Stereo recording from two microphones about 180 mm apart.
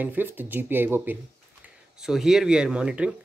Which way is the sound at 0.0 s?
10° right (ahead or behind).